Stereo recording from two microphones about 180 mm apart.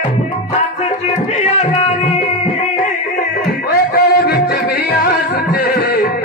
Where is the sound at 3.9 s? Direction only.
60° left (ahead or behind).